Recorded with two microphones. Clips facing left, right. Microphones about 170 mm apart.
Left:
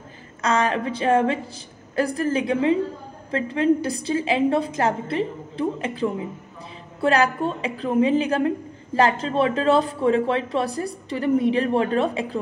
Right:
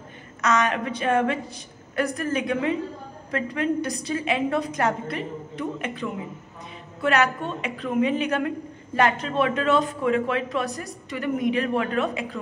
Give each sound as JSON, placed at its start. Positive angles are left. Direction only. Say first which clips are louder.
{"t": 0.4, "sound": "a woman's voice", "louder": "left 1 dB", "side_deg": 30}